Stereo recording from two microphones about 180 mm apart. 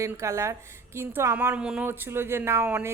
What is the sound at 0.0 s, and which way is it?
Speech, 15° right (ahead or behind).